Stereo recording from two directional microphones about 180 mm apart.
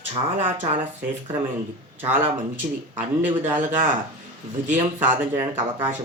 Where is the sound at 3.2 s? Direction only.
10° right (ahead or behind).